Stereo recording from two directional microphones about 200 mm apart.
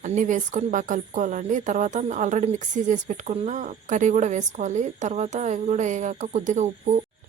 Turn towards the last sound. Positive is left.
turn(degrees=-35)  # may be behind; listen again after turning